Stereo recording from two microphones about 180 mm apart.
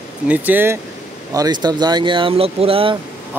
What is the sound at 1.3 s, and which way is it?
Speech, 20° right (ahead or behind).